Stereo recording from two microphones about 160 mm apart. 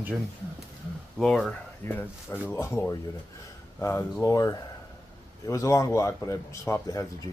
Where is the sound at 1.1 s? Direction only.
Centre (ahead or behind).